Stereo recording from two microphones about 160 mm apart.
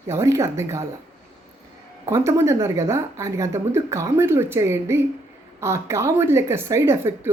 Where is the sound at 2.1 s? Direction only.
15° right (ahead or behind).